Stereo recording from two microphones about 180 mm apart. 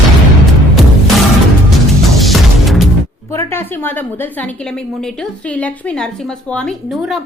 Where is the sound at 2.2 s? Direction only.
Centre (ahead or behind).